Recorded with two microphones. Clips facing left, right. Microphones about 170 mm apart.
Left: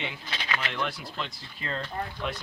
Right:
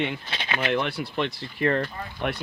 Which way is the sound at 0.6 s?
60° right (ahead or behind).